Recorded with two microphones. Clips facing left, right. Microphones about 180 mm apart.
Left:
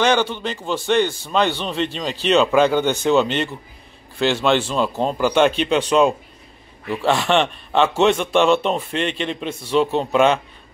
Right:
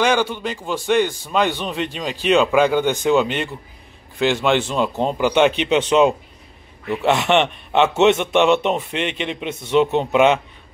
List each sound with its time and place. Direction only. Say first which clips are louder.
0.0 s a man's voice: even; 10° right (ahead or behind)